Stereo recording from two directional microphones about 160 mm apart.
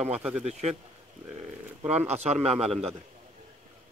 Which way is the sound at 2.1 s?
40° right (ahead or behind).